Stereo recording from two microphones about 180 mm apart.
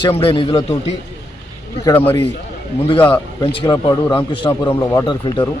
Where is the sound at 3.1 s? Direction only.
30° left (ahead or behind).